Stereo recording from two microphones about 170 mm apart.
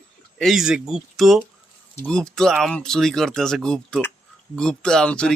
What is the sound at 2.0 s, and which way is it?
A man's voice, 5° left (ahead or behind).